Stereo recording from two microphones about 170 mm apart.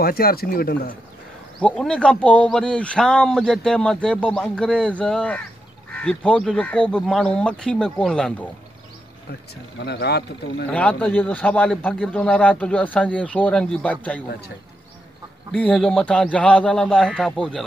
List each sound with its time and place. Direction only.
0.0 s speech: 60° left (ahead or behind)
1.6 s a man's voice: 5° left (ahead or behind)
9.8 s speech: 75° left (ahead or behind)
10.7 s a man's voice: 10° left (ahead or behind)
15.5 s a man's voice: 5° left (ahead or behind)